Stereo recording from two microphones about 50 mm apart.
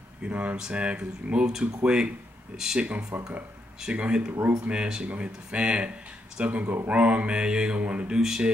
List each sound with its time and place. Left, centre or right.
0.2 s mantra: right
1.6 s speech: right
2.8 s mantra: right
4.3 s speech: right
4.6 s mantra: centre
8.1 s speech: centre